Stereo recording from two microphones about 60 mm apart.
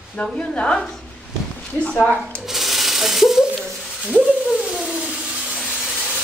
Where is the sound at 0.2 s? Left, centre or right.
Centre.